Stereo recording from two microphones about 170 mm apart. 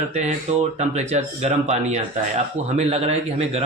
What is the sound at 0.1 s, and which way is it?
Speech, 40° right (ahead or behind).